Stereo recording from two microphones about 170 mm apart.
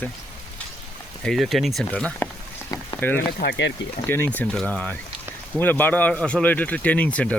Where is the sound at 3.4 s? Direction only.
85° left.